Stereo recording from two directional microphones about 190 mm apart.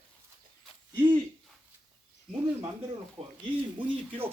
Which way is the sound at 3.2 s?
35° right (ahead or behind).